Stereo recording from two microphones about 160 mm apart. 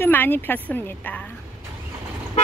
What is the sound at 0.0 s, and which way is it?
Speech, 10° left (ahead or behind).